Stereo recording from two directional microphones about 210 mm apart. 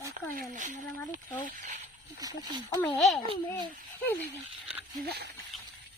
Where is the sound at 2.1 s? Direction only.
15° right (ahead or behind).